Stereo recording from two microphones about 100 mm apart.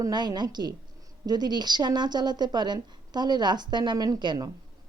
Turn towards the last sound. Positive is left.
turn(degrees=-45)  # may be behind; listen again after turning